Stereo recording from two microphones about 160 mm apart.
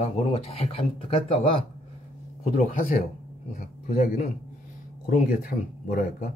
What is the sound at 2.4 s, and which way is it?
Speech, 45° left (ahead or behind).